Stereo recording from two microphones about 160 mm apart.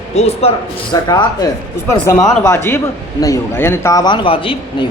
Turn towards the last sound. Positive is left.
turn(degrees=35)  # may be behind; listen again after turning